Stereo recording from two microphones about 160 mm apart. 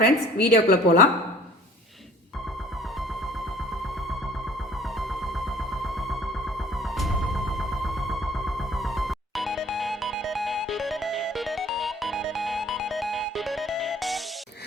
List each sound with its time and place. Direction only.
0.0 s a woman's voice: 80° left
5.7 s music: centre (ahead or behind)